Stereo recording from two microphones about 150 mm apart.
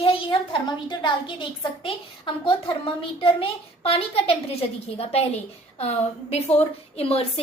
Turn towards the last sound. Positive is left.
turn(degrees=40)  # may be behind; listen again after turning